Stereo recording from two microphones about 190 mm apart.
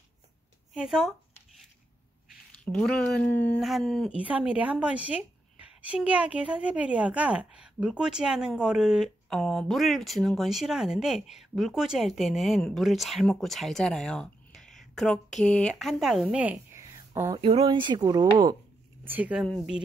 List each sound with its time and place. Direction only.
0.7 s speech: centre (ahead or behind)
2.5 s speech: 5° left (ahead or behind); by 17.4 s 15° right (ahead or behind)
17.4 s speech: 30° right (ahead or behind)
19.0 s speech: 10° right (ahead or behind)